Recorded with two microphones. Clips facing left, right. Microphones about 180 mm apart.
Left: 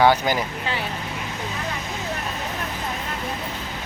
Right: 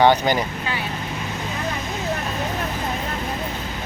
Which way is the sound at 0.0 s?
5° left (ahead or behind).